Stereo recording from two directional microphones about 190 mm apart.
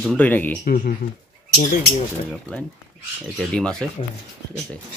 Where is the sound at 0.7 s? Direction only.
50° left (ahead or behind).